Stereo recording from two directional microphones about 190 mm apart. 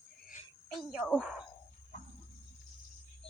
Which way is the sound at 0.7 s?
5° right (ahead or behind).